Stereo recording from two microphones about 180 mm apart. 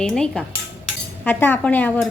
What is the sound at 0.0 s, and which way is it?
A woman's voice, 5° left (ahead or behind).